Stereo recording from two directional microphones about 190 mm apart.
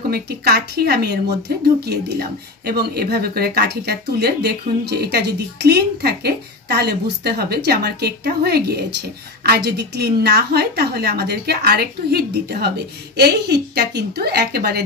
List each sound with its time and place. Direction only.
0.1 s speech: 55° right (ahead or behind)